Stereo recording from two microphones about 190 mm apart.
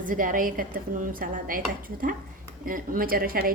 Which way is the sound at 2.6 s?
45° right (ahead or behind).